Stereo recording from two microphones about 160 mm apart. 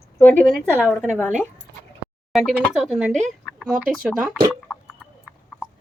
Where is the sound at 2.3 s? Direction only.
Centre (ahead or behind).